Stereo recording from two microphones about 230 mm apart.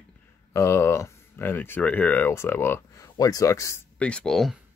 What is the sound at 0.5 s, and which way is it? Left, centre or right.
Speech, centre.